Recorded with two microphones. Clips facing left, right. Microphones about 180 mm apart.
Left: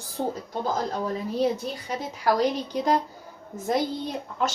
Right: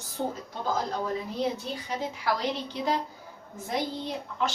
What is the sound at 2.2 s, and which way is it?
Speech, 45° left (ahead or behind).